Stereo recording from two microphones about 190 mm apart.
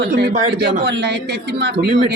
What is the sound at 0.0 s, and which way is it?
Speech, 65° right (ahead or behind).